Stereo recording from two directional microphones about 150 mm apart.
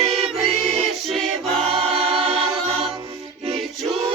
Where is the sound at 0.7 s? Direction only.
45° right (ahead or behind).